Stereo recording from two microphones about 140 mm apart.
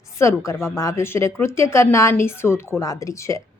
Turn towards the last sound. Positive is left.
turn(degrees=20)  # may be behind; listen again after turning